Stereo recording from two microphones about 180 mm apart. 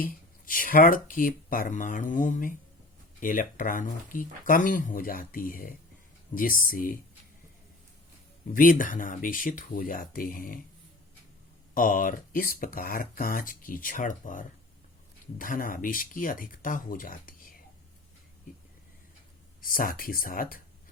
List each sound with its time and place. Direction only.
0.0 s speech: 50° left (ahead or behind)
8.4 s speech: 50° left (ahead or behind)
11.7 s speech: 50° left (ahead or behind)
19.6 s speech: 50° left (ahead or behind)